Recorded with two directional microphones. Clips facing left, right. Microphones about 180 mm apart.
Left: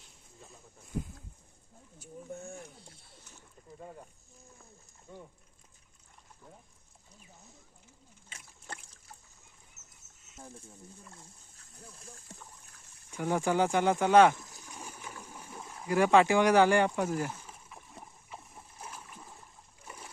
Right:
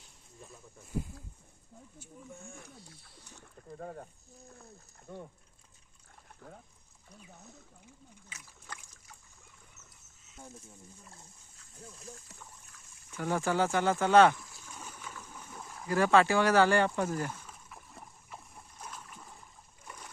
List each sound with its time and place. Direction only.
3.8 s speech: 50° right (ahead or behind)
9.8 s a sound: 55° right (ahead or behind)
13.1 s speech: 15° left (ahead or behind)
14.3 s boat: 20° left (ahead or behind)
15.9 s speech: 15° left (ahead or behind)
17.4 s a sound: 5° left (ahead or behind)
19.8 s splash: 5° left (ahead or behind)